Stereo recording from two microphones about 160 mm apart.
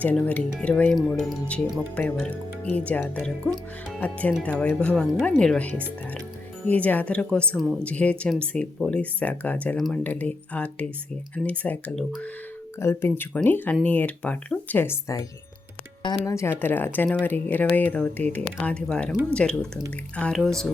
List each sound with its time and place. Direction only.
0.0 s speech: 10° left (ahead or behind)